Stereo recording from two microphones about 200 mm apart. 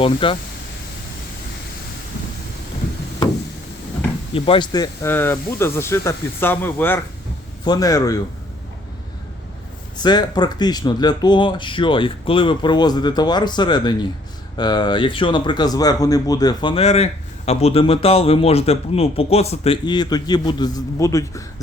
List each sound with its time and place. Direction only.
0.0 s speech: 25° left (ahead or behind)
4.4 s speech: 25° left (ahead or behind)
10.0 s speech: 20° left (ahead or behind)